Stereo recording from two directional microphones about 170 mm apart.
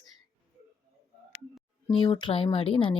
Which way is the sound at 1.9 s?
30° left (ahead or behind).